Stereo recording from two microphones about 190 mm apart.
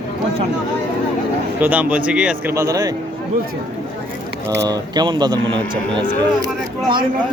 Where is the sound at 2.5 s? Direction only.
20° right (ahead or behind).